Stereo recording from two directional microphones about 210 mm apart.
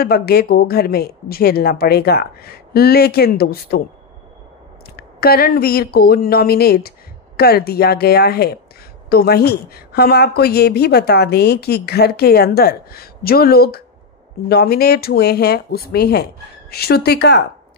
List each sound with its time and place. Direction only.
0.0 s a woman's voice: 50° left (ahead or behind)
4.9 s a woman's voice: 45° left (ahead or behind)